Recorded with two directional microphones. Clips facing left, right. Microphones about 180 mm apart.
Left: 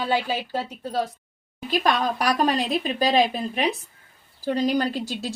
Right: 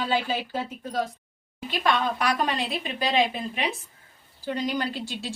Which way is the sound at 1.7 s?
40° left (ahead or behind).